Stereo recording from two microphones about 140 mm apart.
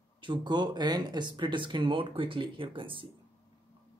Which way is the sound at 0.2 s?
35° right (ahead or behind).